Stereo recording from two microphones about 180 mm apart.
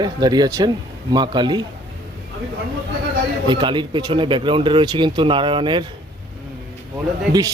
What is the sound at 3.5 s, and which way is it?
Speech, 25° right (ahead or behind).